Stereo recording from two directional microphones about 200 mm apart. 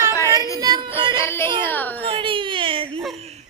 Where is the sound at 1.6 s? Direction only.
10° left (ahead or behind).